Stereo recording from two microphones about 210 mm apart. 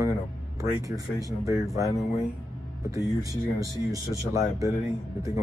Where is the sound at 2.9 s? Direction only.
15° right (ahead or behind).